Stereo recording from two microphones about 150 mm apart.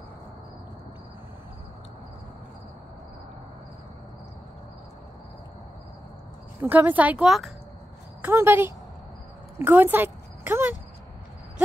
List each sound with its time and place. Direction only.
6.6 s speech: 15° right (ahead or behind)
8.2 s speech: 15° right (ahead or behind)